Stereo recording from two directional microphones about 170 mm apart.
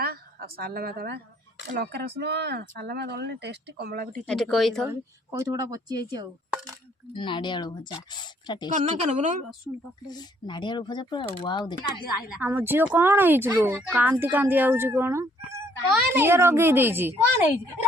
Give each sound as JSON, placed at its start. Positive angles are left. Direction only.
{"t": 0.0, "sound": "a woman's voice", "side_deg": -65}
{"t": 4.3, "sound": "speech", "side_deg": 0}
{"t": 4.9, "sound": "speech", "side_deg": -15}
{"t": 7.1, "sound": "speech", "side_deg": 25}
{"t": 8.8, "sound": "speech", "side_deg": -40}
{"t": 10.1, "sound": "speech", "side_deg": 25}
{"t": 12.4, "sound": "speech", "side_deg": -10}